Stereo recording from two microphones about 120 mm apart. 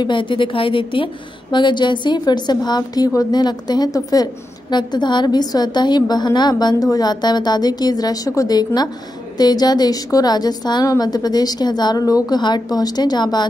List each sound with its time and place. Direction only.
0.0 s a woman's voice: 40° left (ahead or behind)